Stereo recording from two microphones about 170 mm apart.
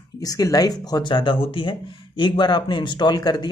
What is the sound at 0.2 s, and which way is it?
Speech, 20° left (ahead or behind).